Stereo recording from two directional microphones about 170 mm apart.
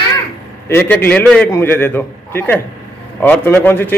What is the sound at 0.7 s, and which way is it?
A man's voice, 10° left (ahead or behind).